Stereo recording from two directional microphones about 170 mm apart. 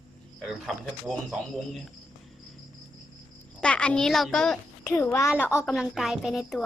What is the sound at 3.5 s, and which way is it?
A child's voice, 5° left (ahead or behind).